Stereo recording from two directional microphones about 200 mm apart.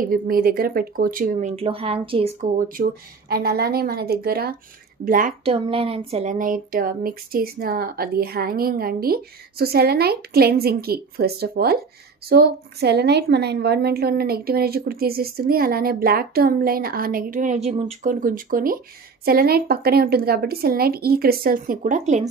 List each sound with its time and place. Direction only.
0.0 s a woman's voice: 45° right (ahead or behind); by 2.3 s 25° right (ahead or behind)
2.4 s a woman's voice: 50° right (ahead or behind)
5.4 s a woman's voice: 30° right (ahead or behind)